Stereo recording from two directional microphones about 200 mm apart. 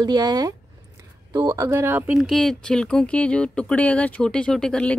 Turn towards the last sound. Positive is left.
turn(degrees=5)  # may be behind; listen again after turning